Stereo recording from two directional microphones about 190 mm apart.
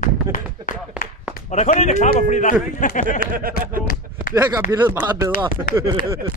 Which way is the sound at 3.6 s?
50° right (ahead or behind).